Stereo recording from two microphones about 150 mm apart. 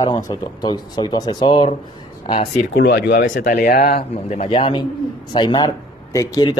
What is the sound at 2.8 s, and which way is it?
Speech, 90° left.